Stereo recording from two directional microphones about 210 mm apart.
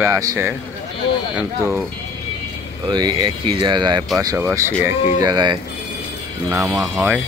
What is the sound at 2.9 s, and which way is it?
Speech, 20° right (ahead or behind).